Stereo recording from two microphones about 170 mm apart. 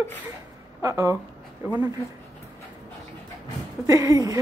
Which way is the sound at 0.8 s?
20° right (ahead or behind).